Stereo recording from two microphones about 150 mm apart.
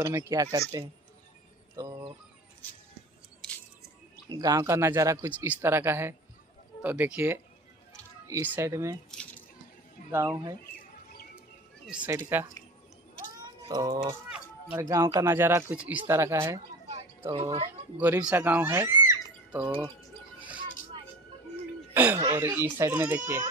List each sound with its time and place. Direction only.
0.0 s speech: 20° right (ahead or behind)
1.8 s a sound: 20° right (ahead or behind)
4.3 s speech: 25° right (ahead or behind)
9.1 s squish: 5° left (ahead or behind)
10.1 s speech: 20° right (ahead or behind)
11.8 s speech: 5° right (ahead or behind)
13.7 s speech: 25° right (ahead or behind)
17.3 s speech: 40° right (ahead or behind)
17.9 s speech: 15° right (ahead or behind)
21.9 s chuckle: 10° right (ahead or behind)
22.3 s speech: 15° right (ahead or behind)